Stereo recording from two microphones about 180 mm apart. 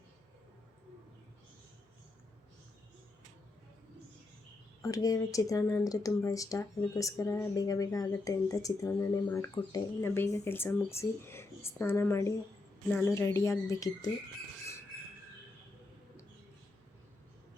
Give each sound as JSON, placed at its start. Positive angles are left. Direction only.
{"t": 4.8, "sound": "speech", "side_deg": 20}